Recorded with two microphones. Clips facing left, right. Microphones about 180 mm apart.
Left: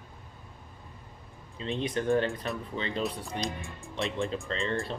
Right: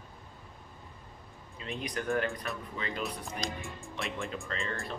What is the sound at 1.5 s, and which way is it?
Speech, 30° left (ahead or behind).